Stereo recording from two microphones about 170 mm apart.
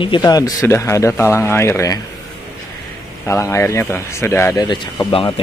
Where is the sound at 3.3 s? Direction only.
15° left (ahead or behind).